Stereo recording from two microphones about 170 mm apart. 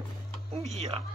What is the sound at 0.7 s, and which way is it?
Speech, 40° right (ahead or behind).